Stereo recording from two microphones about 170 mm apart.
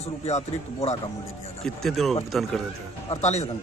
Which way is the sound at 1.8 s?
Centre (ahead or behind).